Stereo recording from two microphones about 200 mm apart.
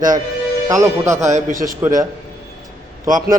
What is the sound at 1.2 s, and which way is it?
Speech, 35° right (ahead or behind).